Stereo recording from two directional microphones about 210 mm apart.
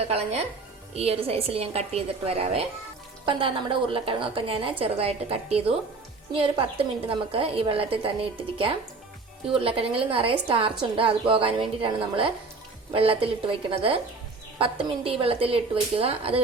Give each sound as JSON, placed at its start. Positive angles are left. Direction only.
{"t": 0.1, "sound": "a woman's voice", "side_deg": -30}